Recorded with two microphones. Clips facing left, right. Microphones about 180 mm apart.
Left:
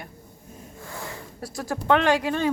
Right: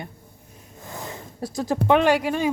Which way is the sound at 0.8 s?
20° right (ahead or behind).